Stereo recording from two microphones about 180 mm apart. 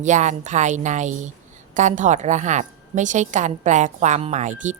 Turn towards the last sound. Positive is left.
turn(degrees=-40)  # may be behind; listen again after turning